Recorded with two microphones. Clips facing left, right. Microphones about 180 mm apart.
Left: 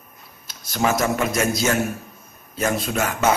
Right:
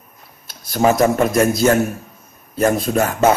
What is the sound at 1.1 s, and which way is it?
A man's voice, 50° right (ahead or behind).